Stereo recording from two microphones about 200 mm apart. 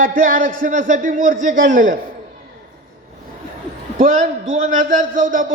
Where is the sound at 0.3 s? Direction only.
40° right (ahead or behind).